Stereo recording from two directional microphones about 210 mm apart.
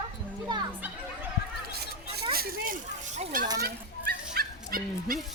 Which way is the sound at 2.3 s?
45° right (ahead or behind).